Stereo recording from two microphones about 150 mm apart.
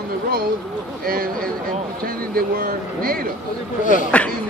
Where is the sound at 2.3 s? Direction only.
75° right (ahead or behind).